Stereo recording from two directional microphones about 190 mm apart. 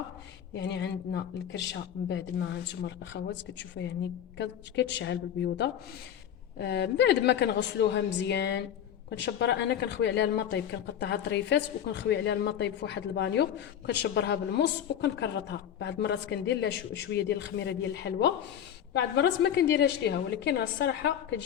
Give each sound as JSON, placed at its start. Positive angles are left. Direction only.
{"t": 0.5, "sound": "speech", "side_deg": 65}